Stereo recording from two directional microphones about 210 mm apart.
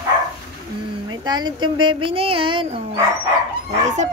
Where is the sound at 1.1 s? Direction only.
20° right (ahead or behind).